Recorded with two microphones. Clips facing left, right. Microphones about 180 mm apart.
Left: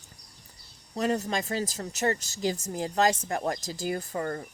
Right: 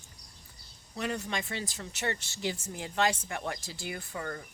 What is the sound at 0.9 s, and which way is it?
Speech, 40° left (ahead or behind).